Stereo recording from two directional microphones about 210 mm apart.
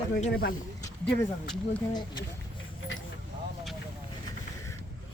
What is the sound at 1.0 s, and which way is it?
Speech, 5° left (ahead or behind).